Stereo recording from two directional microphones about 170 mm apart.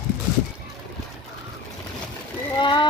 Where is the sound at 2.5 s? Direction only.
25° left (ahead or behind).